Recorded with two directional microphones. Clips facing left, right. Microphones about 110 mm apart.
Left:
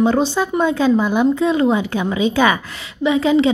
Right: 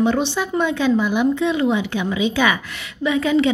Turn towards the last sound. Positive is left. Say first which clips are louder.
# left 3 dB
turn(degrees=25)  # may be behind; listen again after turning